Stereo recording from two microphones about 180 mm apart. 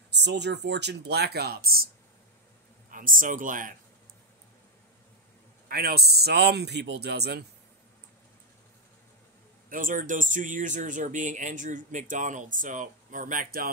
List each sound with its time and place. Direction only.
0.1 s speech: 70° right (ahead or behind)
2.9 s speech: 50° right (ahead or behind)
5.7 s a man's voice: 60° right (ahead or behind)
9.7 s speech: 50° right (ahead or behind)